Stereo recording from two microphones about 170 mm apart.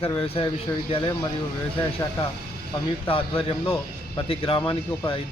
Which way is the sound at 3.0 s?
30° left (ahead or behind).